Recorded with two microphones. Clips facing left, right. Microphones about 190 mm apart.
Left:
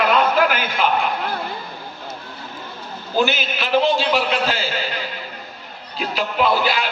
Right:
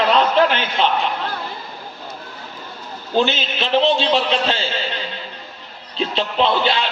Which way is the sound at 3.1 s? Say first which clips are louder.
Right 1 dB; 25° right (ahead or behind).